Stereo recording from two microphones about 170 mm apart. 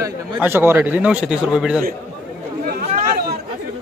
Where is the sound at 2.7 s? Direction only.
65° right (ahead or behind).